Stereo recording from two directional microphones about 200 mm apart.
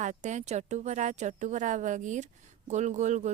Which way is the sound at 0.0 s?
35° right (ahead or behind).